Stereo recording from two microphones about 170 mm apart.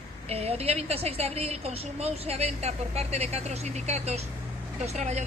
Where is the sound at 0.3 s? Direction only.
35° right (ahead or behind).